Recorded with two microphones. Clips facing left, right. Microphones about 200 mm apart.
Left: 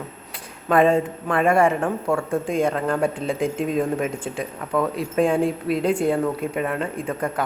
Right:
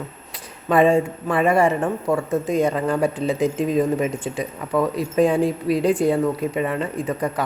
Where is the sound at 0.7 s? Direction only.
5° right (ahead or behind).